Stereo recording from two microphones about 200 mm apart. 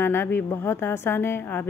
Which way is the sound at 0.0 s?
10° left (ahead or behind).